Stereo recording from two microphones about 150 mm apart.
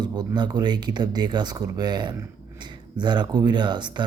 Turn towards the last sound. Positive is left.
turn(degrees=-30)  # may be behind; listen again after turning